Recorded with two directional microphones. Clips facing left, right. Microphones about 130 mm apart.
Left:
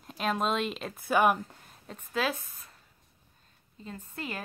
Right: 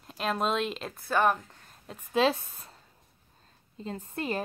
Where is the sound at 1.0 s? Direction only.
10° left (ahead or behind).